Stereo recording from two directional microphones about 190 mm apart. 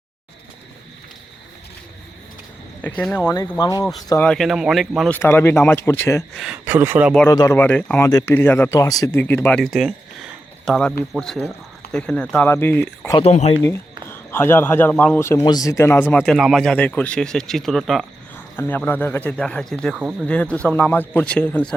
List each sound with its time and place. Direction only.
2.8 s speech: 5° left (ahead or behind)
4.3 s speech: centre (ahead or behind)
6.3 s speech: 5° right (ahead or behind)
7.3 s speech: 15° left (ahead or behind)
13.1 s speech: 35° left (ahead or behind)
14.1 s speech: 10° left (ahead or behind)
18.3 s speech: 10° left (ahead or behind)